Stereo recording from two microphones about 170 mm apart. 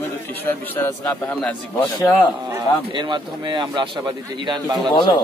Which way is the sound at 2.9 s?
25° right (ahead or behind).